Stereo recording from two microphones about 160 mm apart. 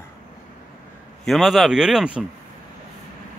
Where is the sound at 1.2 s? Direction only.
Centre (ahead or behind).